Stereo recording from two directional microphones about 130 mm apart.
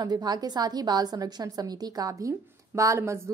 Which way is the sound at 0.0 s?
30° right (ahead or behind).